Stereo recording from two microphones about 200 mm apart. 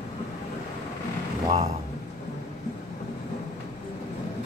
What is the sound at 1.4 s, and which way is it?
Speech, 30° right (ahead or behind).